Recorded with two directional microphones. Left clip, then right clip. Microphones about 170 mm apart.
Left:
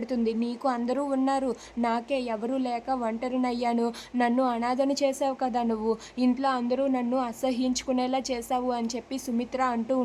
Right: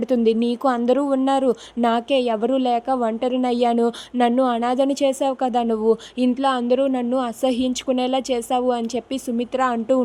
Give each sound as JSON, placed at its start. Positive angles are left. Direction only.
{"t": 0.1, "sound": "speech", "side_deg": -40}